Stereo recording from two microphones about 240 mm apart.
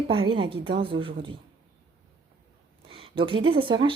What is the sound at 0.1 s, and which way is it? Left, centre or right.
A woman's voice, right.